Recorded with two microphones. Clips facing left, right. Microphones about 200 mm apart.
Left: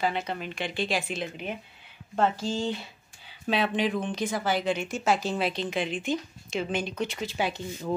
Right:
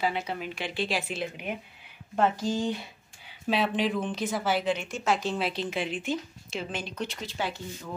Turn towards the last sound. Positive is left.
turn(degrees=20)  # may be behind; listen again after turning